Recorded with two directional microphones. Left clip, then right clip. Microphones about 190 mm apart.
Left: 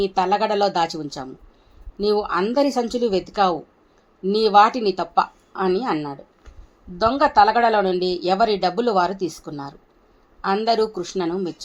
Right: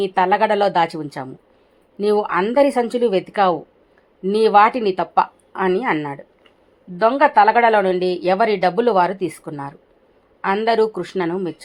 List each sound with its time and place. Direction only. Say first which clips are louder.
0.0 s speech: right 3 dB; 20° right (ahead or behind)